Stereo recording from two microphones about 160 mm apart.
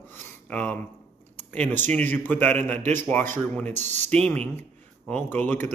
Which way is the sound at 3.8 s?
45° right (ahead or behind).